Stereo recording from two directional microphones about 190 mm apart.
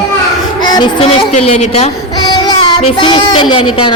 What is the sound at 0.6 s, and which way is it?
Music, 25° left (ahead or behind).